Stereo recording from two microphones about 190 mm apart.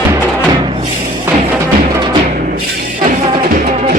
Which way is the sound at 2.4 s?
50° right (ahead or behind).